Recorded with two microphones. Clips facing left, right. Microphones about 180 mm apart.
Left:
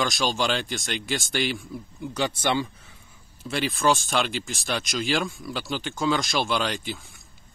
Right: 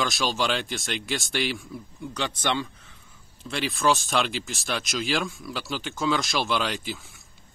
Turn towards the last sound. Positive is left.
turn(degrees=0)  # may be behind; listen again after turning